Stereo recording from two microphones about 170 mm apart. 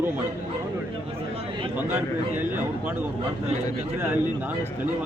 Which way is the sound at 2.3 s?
10° right (ahead or behind).